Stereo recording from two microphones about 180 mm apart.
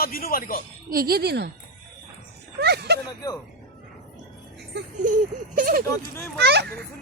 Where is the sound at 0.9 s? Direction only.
55° right (ahead or behind).